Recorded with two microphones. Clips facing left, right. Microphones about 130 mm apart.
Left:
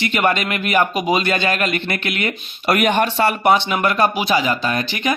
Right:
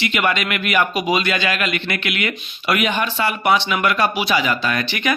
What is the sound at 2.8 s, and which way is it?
Speech, 55° left (ahead or behind).